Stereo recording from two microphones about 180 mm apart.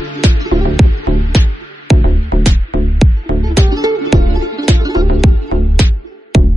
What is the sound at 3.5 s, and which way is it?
Music, 20° right (ahead or behind).